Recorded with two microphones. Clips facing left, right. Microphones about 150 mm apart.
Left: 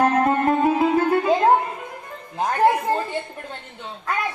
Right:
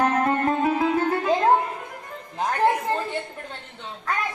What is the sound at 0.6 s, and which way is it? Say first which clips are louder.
Speech: left 3 dB; 10° left (ahead or behind).